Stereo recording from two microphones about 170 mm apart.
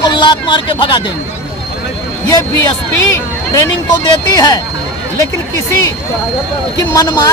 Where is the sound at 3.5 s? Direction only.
25° left (ahead or behind).